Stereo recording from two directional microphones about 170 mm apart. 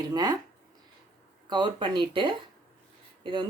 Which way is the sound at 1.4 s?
25° right (ahead or behind).